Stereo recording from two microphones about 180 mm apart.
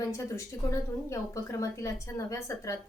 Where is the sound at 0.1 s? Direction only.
15° left (ahead or behind).